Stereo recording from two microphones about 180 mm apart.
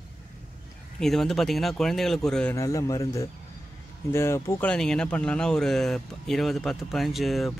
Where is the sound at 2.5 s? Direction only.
15° left (ahead or behind).